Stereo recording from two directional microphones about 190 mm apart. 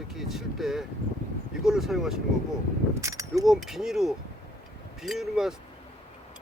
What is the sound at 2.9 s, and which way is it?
Keys jangling, 15° right (ahead or behind).